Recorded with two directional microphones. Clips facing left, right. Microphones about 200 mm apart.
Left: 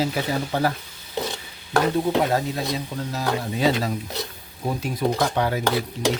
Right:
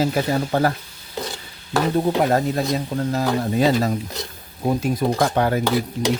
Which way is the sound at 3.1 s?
50° right (ahead or behind).